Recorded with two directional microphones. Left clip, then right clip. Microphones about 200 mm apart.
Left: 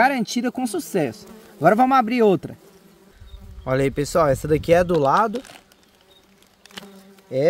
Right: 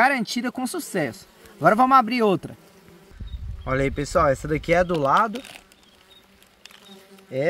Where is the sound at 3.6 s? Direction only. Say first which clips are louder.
Left 3 dB; 65° left (ahead or behind).